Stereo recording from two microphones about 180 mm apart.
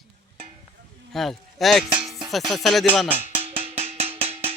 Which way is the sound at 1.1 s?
Centre (ahead or behind).